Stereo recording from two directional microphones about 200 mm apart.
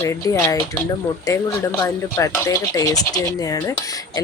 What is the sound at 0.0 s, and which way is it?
Speech, 15° left (ahead or behind).